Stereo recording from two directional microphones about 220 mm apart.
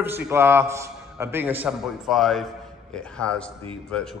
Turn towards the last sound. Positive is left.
turn(degrees=5)  # may be behind; listen again after turning